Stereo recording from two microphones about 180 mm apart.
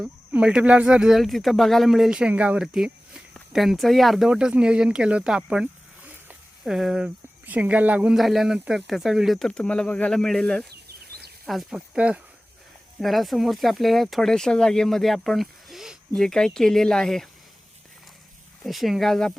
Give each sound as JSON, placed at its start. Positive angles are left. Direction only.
{"t": 0.0, "sound": "speech", "side_deg": -5}
{"t": 10.7, "sound": "a sound", "side_deg": -60}
{"t": 11.4, "sound": "speech", "side_deg": 0}
{"t": 18.6, "sound": "speech", "side_deg": 0}